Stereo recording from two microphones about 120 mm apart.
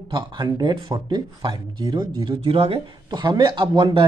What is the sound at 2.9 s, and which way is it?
Speech, 40° right (ahead or behind).